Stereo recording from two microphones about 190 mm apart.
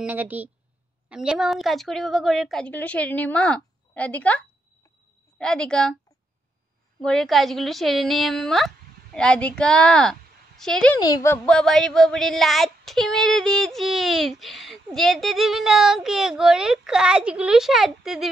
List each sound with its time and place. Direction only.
0.0 s a woman's voice: 10° right (ahead or behind)
1.0 s child singing: 5° right (ahead or behind)
7.0 s child singing: 5° left (ahead or behind)
11.0 s speech: 20° left (ahead or behind)
11.4 s child singing: 5° left (ahead or behind)